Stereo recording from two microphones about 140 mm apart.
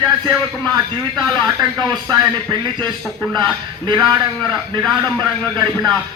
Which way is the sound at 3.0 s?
Centre (ahead or behind).